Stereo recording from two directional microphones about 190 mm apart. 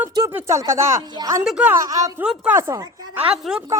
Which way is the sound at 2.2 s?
5° right (ahead or behind).